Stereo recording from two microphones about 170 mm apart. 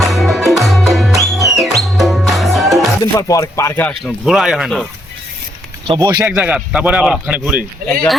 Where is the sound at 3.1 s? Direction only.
20° left (ahead or behind).